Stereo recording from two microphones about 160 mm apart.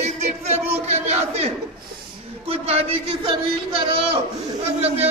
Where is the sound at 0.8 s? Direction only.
40° right (ahead or behind).